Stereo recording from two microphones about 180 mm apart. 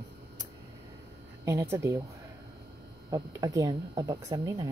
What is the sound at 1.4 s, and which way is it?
Speech, 15° right (ahead or behind).